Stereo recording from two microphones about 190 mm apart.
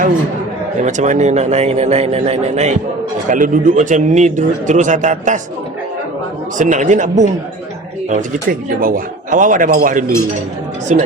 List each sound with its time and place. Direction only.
0.8 s speech: 40° right (ahead or behind)
6.6 s speech: 40° right (ahead or behind)